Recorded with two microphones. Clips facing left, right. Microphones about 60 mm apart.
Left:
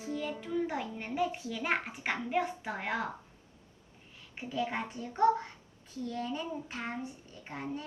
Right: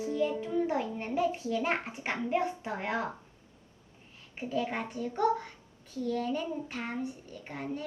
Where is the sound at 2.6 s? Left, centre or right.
Left.